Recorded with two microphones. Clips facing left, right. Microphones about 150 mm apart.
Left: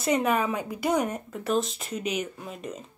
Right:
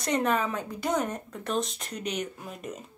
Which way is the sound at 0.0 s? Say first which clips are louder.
Left 2 dB; 10° left (ahead or behind).